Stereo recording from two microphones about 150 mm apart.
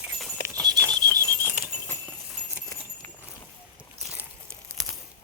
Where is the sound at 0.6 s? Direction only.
25° right (ahead or behind).